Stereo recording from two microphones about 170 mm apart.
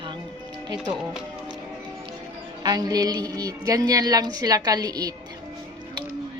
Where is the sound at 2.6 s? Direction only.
20° right (ahead or behind).